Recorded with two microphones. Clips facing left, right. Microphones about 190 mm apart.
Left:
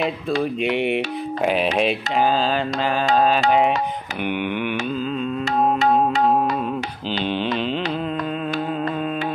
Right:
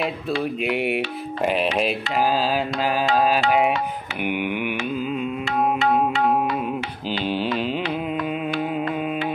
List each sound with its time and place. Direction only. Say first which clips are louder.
0.4 s carnatic music: left 2 dB; 5° right (ahead or behind)
4.2 s a sound: left 1 dB; 10° right (ahead or behind)
4.9 s music: left 1 dB; 10° right (ahead or behind)
5.4 s music: left 3 dB; 40° left (ahead or behind)
7.2 s mantra: even; 5° right (ahead or behind)
8.5 s carnatic music: even; 15° right (ahead or behind)